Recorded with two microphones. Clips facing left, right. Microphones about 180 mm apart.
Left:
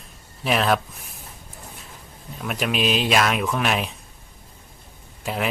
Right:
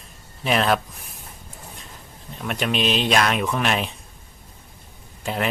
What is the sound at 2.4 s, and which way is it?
Speech, centre (ahead or behind).